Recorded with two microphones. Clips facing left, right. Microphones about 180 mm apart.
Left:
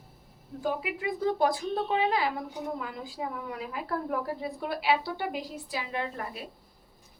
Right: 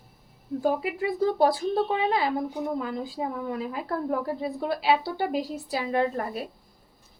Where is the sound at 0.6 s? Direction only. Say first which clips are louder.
Right 5 dB; 40° right (ahead or behind).